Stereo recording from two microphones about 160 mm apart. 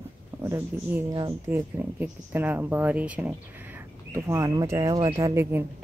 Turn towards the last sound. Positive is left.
turn(degrees=-15)  # may be behind; listen again after turning